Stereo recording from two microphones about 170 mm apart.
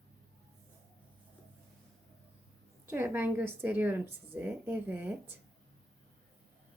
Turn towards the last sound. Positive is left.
turn(degrees=-10)  # may be behind; listen again after turning